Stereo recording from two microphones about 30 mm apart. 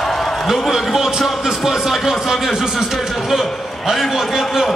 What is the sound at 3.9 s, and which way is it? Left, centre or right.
Speech, right.